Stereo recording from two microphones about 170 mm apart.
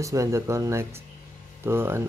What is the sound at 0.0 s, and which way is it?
Speech, 20° right (ahead or behind).